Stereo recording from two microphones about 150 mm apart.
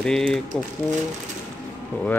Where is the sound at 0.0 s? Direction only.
5° left (ahead or behind).